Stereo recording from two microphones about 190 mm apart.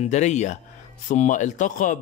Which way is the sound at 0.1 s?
35° left (ahead or behind).